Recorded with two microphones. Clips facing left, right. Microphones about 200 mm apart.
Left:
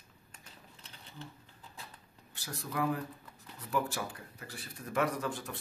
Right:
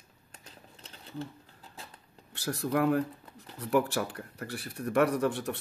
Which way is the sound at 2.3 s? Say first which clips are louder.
Right 9 dB; 70° right (ahead or behind).